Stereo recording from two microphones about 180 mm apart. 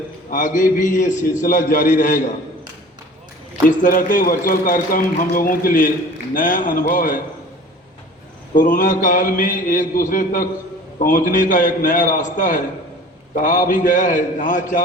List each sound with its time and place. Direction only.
0.3 s a man's voice: 45° left (ahead or behind)
3.7 s a man's voice: 45° left (ahead or behind)
8.5 s a man's voice: 50° left (ahead or behind)